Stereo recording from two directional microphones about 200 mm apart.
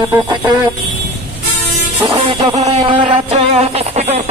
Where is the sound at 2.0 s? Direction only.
30° right (ahead or behind).